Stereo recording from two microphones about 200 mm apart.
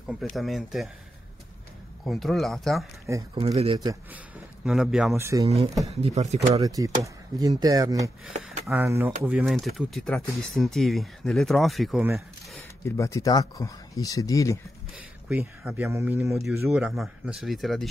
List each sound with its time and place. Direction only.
0.0 s speech: centre (ahead or behind)
2.0 s speech: centre (ahead or behind)
3.3 s speech: 30° right (ahead or behind)
4.6 s speech: centre (ahead or behind)
5.9 s speech: 30° right (ahead or behind)
6.6 s speech: 15° right (ahead or behind)
12.5 s speech: 15° left (ahead or behind)
15.6 s speech: 10° right (ahead or behind)